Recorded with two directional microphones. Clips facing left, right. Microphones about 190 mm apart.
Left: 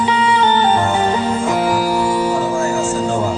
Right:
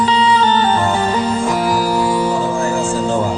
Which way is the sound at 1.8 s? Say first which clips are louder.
Even; 10° left (ahead or behind).